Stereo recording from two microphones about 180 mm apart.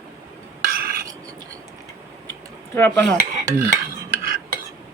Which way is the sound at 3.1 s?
40° right (ahead or behind).